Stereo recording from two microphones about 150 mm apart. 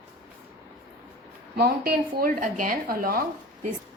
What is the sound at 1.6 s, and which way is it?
Speech, 85° right.